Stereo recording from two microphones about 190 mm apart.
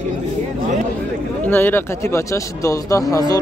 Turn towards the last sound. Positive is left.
turn(degrees=20)  # may be behind; listen again after turning